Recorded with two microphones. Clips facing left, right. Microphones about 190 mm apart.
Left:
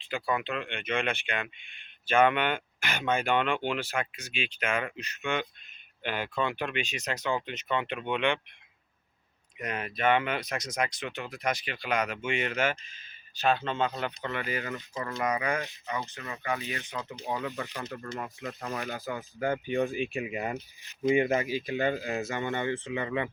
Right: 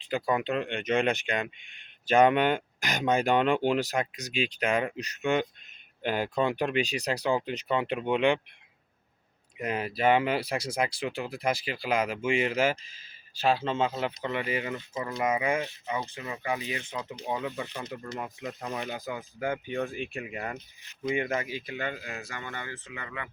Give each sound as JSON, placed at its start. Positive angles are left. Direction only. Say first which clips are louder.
{"t": 0.0, "sound": "speech", "louder": "right 3 dB", "side_deg": -40}
{"t": 9.6, "sound": "speech", "louder": "right 3 dB", "side_deg": -30}
{"t": 12.2, "sound": "speech", "louder": "right 4 dB", "side_deg": -10}
{"t": 12.5, "sound": "speech", "louder": "right 3 dB", "side_deg": -30}
{"t": 13.6, "sound": "speech", "louder": "right 2 dB", "side_deg": -5}
{"t": 14.3, "sound": "speech", "louder": "right 2 dB", "side_deg": -25}
{"t": 20.1, "sound": "speech", "louder": "left 3 dB", "side_deg": 15}
{"t": 21.0, "sound": "speech", "louder": "left 5 dB", "side_deg": 25}